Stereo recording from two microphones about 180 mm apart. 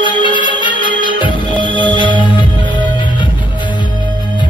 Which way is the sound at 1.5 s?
25° right (ahead or behind).